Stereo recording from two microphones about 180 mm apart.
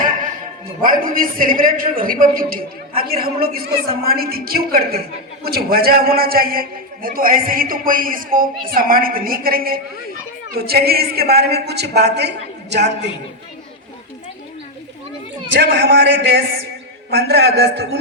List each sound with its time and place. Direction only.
0.8 s a man's voice: 50° right (ahead or behind); by 13.1 s 70° right (ahead or behind)
15.5 s a man's voice: 70° right (ahead or behind)